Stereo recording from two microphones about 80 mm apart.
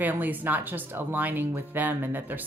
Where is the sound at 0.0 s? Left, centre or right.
Right.